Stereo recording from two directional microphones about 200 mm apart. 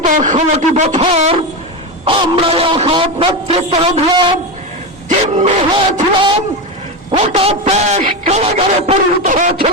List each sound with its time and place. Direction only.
0.0 s speech: 40° right (ahead or behind)
5.0 s speech: 35° right (ahead or behind)
7.1 s speech: 30° right (ahead or behind)